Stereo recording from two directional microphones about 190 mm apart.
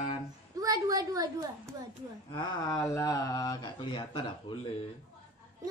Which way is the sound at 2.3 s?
20° left (ahead or behind).